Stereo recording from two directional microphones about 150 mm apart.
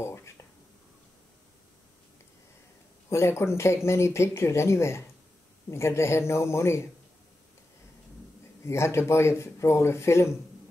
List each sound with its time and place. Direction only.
0.0 s whispering: 20° left (ahead or behind)
3.1 s speech: 20° left (ahead or behind)
8.6 s speech: 20° left (ahead or behind)